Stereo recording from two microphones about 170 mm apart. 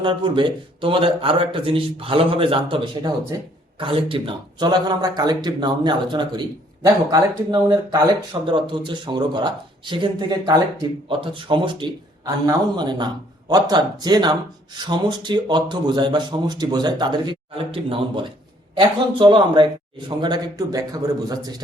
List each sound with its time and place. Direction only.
0.0 s a man's voice: 30° right (ahead or behind)